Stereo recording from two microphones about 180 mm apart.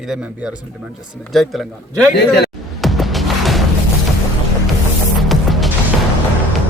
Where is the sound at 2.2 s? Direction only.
65° left (ahead or behind).